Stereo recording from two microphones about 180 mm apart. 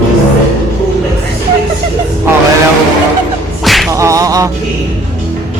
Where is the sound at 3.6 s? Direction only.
Centre (ahead or behind).